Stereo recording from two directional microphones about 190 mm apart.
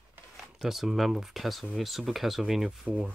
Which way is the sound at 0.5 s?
Centre (ahead or behind).